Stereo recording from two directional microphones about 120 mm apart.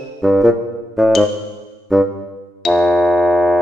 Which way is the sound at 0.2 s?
Centre (ahead or behind).